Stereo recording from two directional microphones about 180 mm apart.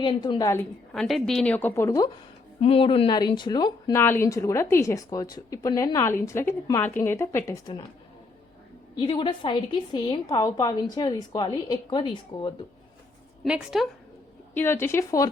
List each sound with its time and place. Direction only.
0.0 s speech: 25° left (ahead or behind)
2.6 s speech: 30° left (ahead or behind); by 7.6 s 15° left (ahead or behind)
9.0 s a woman's voice: 25° left (ahead or behind)
13.4 s a woman's voice: centre (ahead or behind)
14.5 s speech: 15° left (ahead or behind)